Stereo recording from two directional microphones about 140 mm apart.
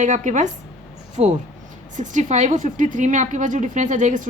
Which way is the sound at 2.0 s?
60° right (ahead or behind).